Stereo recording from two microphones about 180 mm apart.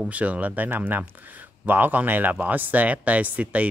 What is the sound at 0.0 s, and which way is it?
Speech, 10° right (ahead or behind).